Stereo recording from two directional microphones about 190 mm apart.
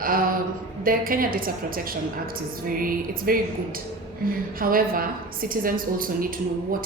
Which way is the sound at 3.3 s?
50° right (ahead or behind).